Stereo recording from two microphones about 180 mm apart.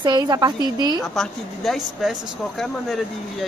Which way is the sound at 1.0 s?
Centre (ahead or behind).